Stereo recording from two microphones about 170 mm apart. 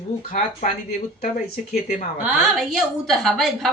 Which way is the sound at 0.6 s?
50° left (ahead or behind).